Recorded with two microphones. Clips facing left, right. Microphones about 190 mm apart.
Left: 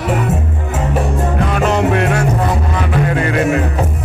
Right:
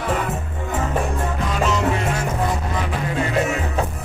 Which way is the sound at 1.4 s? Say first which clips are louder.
Left 6 dB; 60° left (ahead or behind).